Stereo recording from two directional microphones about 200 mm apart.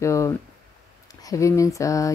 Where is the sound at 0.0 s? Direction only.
15° left (ahead or behind).